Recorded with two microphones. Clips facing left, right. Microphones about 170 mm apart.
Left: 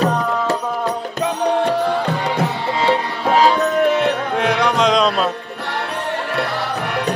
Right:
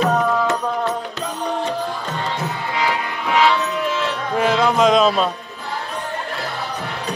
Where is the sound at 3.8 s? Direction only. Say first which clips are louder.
Left 7 dB; 60° left (ahead or behind).